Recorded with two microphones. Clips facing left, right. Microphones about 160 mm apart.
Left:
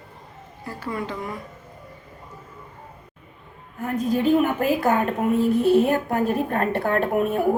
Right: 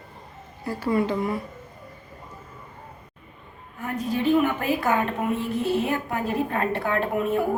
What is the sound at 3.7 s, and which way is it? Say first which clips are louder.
A woman's voice: left 4 dB; 45° left (ahead or behind).